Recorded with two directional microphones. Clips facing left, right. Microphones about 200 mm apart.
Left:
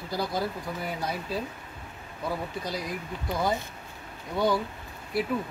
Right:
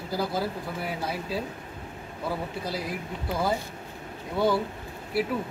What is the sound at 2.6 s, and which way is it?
Speech, 5° right (ahead or behind).